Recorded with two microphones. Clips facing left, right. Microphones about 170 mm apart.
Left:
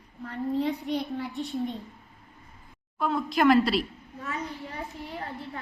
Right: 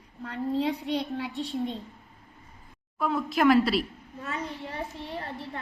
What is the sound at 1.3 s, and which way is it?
Speech, 30° right (ahead or behind).